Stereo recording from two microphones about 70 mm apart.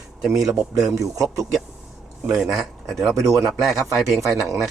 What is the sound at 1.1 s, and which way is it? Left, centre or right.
Speech, right.